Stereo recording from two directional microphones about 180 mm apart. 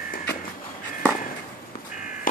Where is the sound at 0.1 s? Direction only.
55° left (ahead or behind).